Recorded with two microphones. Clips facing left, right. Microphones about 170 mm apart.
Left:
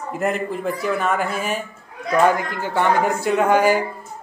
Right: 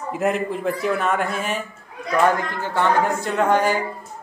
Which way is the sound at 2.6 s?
10° left (ahead or behind).